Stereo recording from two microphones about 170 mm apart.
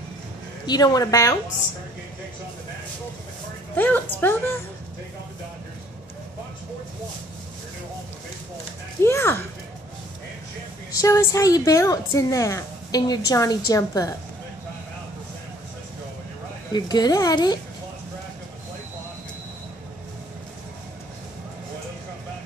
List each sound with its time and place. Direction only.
0.7 s a woman's voice: 20° left (ahead or behind)
3.7 s a woman's voice: 10° left (ahead or behind)
9.0 s a woman's voice: 15° left (ahead or behind)
11.0 s a woman's voice: 20° left (ahead or behind)
16.7 s a woman's voice: 25° left (ahead or behind)